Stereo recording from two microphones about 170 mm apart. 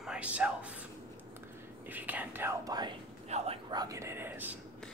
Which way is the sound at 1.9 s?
10° right (ahead or behind).